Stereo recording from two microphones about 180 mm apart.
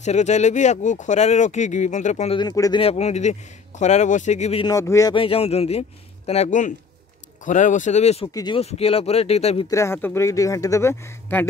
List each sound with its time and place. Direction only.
0.0 s speech: 40° left (ahead or behind)
2.3 s speech: 20° left (ahead or behind)
2.8 s speech: 35° left (ahead or behind)
4.6 s speech: 20° left (ahead or behind)
5.1 s speech: 30° left (ahead or behind)
8.3 s speech: 20° left (ahead or behind)
8.5 s speech: 35° left (ahead or behind)
9.7 s speech: 15° left (ahead or behind)